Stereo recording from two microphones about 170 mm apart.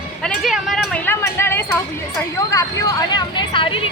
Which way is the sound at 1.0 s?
15° left (ahead or behind).